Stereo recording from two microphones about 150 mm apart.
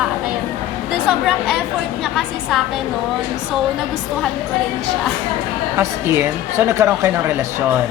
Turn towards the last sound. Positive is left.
turn(degrees=-20)  # may be behind; listen again after turning